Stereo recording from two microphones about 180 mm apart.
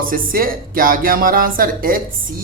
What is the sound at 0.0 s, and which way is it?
Speech, 50° right (ahead or behind).